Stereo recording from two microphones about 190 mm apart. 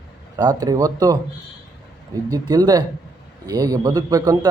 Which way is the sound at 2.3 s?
20° right (ahead or behind).